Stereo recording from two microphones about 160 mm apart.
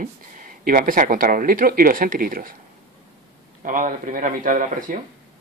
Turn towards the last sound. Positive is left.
turn(degrees=-55)  # may be behind; listen again after turning